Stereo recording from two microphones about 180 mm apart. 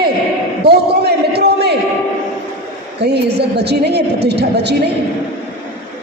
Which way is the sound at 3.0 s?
65° right (ahead or behind).